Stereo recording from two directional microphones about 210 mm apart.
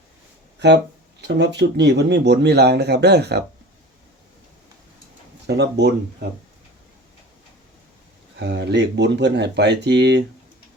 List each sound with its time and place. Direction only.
0.6 s speech: 55° right (ahead or behind)
5.5 s speech: 55° right (ahead or behind)
8.4 s speech: 50° right (ahead or behind)